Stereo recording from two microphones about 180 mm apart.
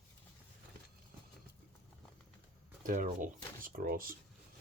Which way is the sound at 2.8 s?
50° right (ahead or behind).